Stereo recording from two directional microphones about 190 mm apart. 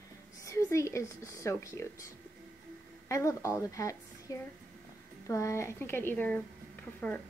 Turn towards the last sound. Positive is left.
turn(degrees=5)  # may be behind; listen again after turning